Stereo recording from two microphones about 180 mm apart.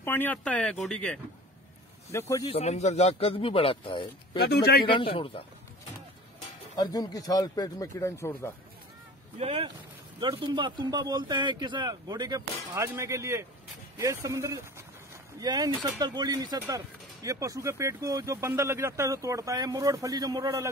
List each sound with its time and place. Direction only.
0.0 s speech: 10° left (ahead or behind)
2.1 s speech: 20° left (ahead or behind)
2.5 s speech: 40° left (ahead or behind)
4.4 s speech: 65° left (ahead or behind)
5.1 s speech: 30° left (ahead or behind)
6.8 s speech: 20° left (ahead or behind)
9.4 s speech: 35° right (ahead or behind)